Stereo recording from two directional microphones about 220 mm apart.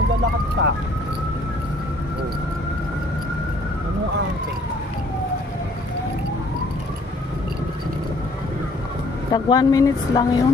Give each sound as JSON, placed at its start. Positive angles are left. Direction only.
{"t": 0.6, "sound": "speech", "side_deg": -60}
{"t": 9.3, "sound": "speech", "side_deg": 20}